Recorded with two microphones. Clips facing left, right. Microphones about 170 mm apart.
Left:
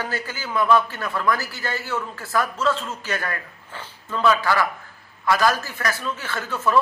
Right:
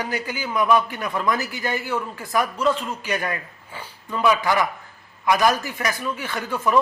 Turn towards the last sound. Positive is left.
turn(degrees=-15)  # may be behind; listen again after turning